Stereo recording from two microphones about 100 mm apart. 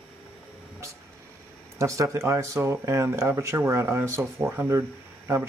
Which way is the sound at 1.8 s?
30° right (ahead or behind).